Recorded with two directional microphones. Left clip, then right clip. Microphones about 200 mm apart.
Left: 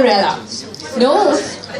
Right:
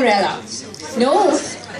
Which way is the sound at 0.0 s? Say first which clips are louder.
Left 3 dB; 35° right (ahead or behind).